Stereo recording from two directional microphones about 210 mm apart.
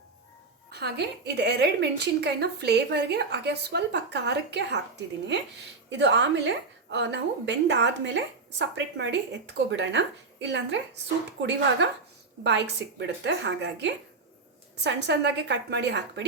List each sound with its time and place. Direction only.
0.7 s a woman's voice: 50° right (ahead or behind)
5.9 s a woman's voice: 55° right (ahead or behind)